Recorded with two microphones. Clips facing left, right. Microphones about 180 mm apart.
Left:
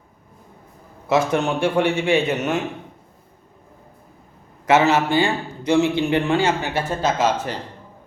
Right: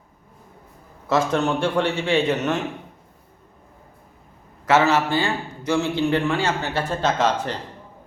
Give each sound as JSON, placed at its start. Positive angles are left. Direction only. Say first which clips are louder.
{"t": 1.0, "sound": "a man's voice", "louder": "left 1 dB", "side_deg": 15}
{"t": 4.6, "sound": "a man's voice", "louder": "left 2 dB", "side_deg": 15}